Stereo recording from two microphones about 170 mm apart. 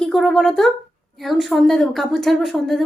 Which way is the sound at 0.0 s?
Centre (ahead or behind).